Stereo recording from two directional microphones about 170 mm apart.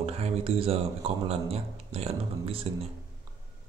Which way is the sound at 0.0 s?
35° right (ahead or behind).